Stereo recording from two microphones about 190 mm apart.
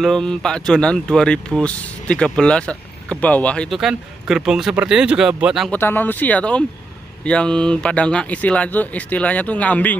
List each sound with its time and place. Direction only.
0.0 s speech: 5° left (ahead or behind)
5.8 s speech: 10° left (ahead or behind)